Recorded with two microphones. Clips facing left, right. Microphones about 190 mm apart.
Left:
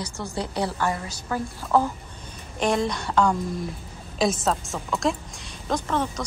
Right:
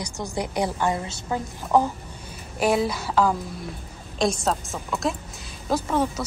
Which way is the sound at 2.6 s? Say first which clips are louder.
Right 2 dB; 5° right (ahead or behind).